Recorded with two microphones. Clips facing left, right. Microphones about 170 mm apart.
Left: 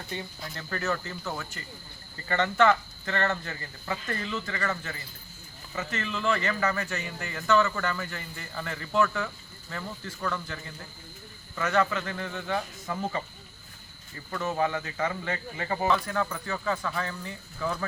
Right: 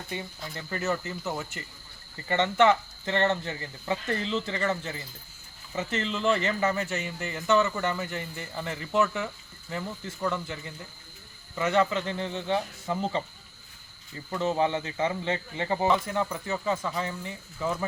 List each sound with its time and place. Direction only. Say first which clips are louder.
0.5 s a man's voice: right 1 dB; 20° right (ahead or behind)
14.3 s a man's voice: right 2 dB; 20° right (ahead or behind)